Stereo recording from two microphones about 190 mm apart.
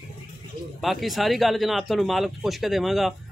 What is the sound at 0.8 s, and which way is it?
Speech, centre (ahead or behind).